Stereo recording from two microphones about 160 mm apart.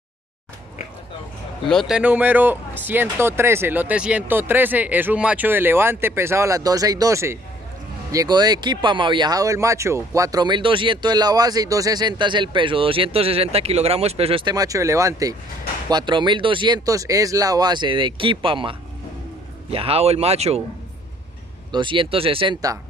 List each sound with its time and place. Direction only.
1.7 s speech: centre (ahead or behind); by 20.6 s 40° right (ahead or behind)
21.7 s speech: 30° right (ahead or behind)